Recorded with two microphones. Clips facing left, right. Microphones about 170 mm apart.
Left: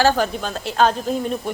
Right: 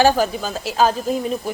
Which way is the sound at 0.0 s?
10° right (ahead or behind).